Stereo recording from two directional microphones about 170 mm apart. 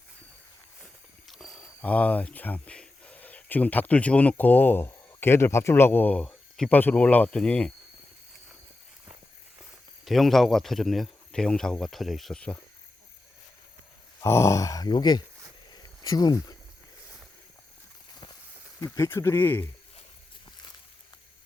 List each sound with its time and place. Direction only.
1.3 s wild animals: centre (ahead or behind)
1.8 s speech: 10° left (ahead or behind)
10.0 s speech: centre (ahead or behind)
14.2 s speech: 15° left (ahead or behind)
15.7 s a sound: 25° left (ahead or behind)
18.8 s speech: 15° left (ahead or behind)